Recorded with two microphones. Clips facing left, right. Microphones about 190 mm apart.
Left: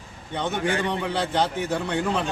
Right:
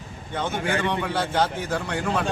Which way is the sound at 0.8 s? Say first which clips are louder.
Even; 20° left (ahead or behind).